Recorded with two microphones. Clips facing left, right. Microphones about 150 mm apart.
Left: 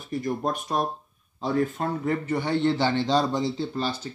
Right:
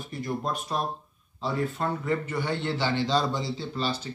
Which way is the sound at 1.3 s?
40° left (ahead or behind).